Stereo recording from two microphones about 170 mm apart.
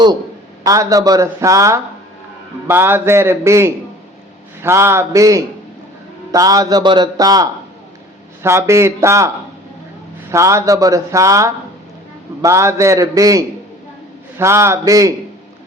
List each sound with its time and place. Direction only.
0.6 s a man's voice: 20° right (ahead or behind)
10.3 s a man's voice: 15° right (ahead or behind)